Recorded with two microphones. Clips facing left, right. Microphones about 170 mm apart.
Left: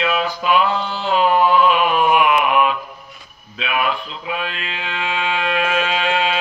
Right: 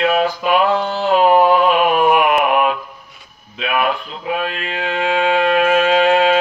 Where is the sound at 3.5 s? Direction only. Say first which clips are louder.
Right 3 dB; 50° right (ahead or behind).